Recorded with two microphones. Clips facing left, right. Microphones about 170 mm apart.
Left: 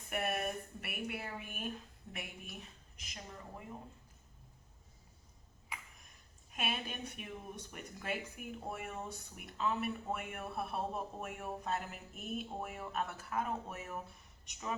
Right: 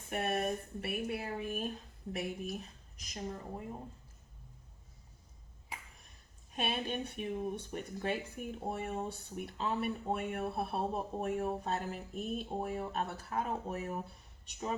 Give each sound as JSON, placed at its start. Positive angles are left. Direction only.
{"t": 0.1, "sound": "speech", "side_deg": -30}
{"t": 6.5, "sound": "a woman's voice", "side_deg": -35}